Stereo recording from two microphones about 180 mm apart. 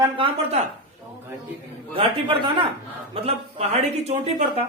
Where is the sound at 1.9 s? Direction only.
30° right (ahead or behind).